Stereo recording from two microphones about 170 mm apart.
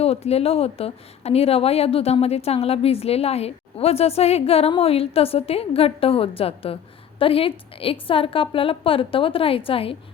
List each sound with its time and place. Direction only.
0.0 s speech: 35° left (ahead or behind)